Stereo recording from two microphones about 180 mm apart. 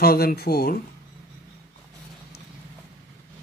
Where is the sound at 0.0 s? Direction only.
60° left (ahead or behind).